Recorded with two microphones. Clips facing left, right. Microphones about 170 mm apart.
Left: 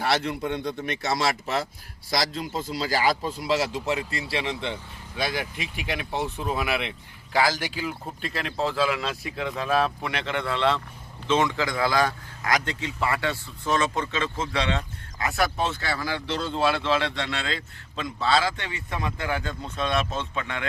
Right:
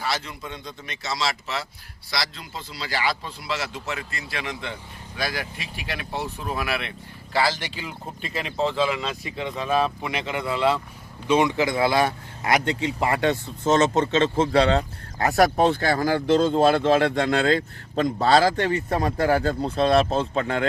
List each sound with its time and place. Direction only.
0.0 s speech: 60° left (ahead or behind); by 10.8 s 5° right (ahead or behind)
11.3 s speech: 15° right (ahead or behind); by 15.4 s 35° right (ahead or behind)
15.4 s speech: 55° right (ahead or behind); by 20.7 s 35° right (ahead or behind)